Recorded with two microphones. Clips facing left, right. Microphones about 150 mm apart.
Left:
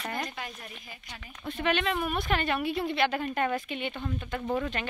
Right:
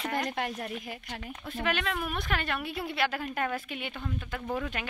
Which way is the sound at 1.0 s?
50° right (ahead or behind).